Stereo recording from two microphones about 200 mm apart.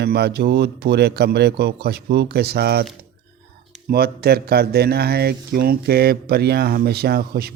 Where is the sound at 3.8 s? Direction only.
50° right (ahead or behind).